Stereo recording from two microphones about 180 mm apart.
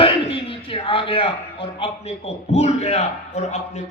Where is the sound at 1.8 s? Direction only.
35° left (ahead or behind).